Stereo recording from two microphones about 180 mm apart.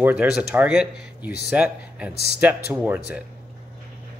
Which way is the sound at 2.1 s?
60° left (ahead or behind).